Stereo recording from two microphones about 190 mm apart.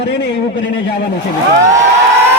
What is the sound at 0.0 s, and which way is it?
A man's voice, 65° left (ahead or behind).